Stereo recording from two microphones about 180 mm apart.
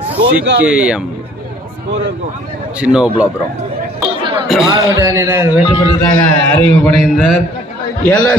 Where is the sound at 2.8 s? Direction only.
5° right (ahead or behind).